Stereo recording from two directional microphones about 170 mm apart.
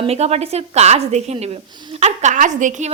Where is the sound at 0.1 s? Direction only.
40° right (ahead or behind).